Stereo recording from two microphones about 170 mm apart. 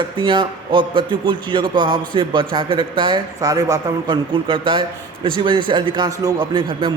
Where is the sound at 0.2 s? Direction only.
30° right (ahead or behind).